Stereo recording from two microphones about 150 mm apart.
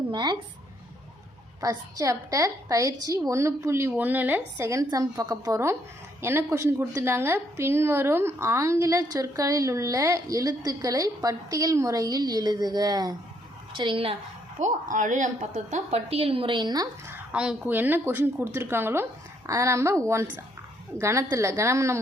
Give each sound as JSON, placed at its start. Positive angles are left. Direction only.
{"t": 0.1, "sound": "speech", "side_deg": -30}
{"t": 1.6, "sound": "a woman's voice", "side_deg": -20}
{"t": 14.6, "sound": "a woman's voice", "side_deg": -60}
{"t": 17.1, "sound": "a woman's voice", "side_deg": -5}